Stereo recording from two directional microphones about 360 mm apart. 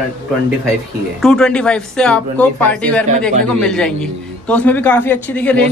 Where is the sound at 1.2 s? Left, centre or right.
Centre.